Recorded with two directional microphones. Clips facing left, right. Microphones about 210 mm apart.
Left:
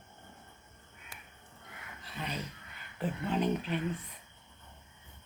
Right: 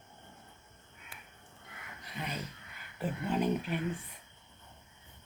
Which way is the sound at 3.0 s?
10° right (ahead or behind).